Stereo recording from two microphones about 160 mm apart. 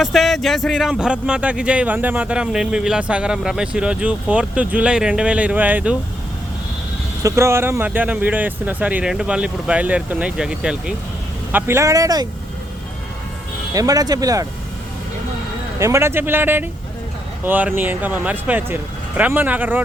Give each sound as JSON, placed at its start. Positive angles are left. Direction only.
{"t": 0.0, "sound": "speech", "side_deg": 0}
{"t": 7.2, "sound": "speech", "side_deg": -20}
{"t": 11.5, "sound": "speech", "side_deg": -15}
{"t": 13.7, "sound": "speech", "side_deg": -20}
{"t": 15.8, "sound": "speech", "side_deg": -15}